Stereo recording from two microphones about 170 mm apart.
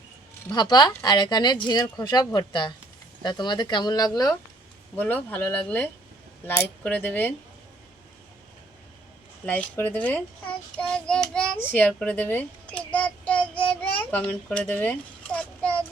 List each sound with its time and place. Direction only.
0.4 s speech: 25° left (ahead or behind)
4.9 s speech: 10° left (ahead or behind)
9.5 s a child's voice: 10° left (ahead or behind)
13.5 s a sound: 5° left (ahead or behind)